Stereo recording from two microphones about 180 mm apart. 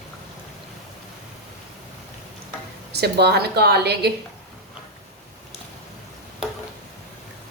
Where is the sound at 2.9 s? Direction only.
65° right (ahead or behind).